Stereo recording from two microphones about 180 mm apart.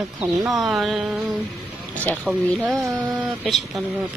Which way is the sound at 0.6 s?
Centre (ahead or behind).